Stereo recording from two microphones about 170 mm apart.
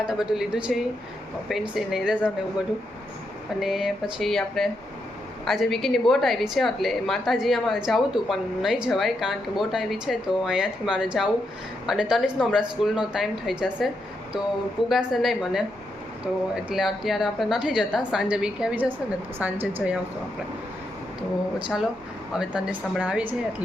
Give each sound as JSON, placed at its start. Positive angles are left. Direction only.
{"t": 0.0, "sound": "a woman's voice", "side_deg": -5}
{"t": 3.6, "sound": "a woman's voice", "side_deg": 0}
{"t": 22.3, "sound": "a woman's voice", "side_deg": -5}